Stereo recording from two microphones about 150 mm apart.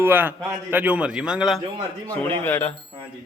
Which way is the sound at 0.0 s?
15° right (ahead or behind).